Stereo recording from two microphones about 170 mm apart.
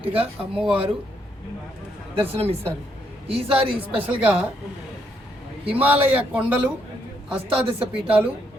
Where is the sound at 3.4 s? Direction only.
30° right (ahead or behind).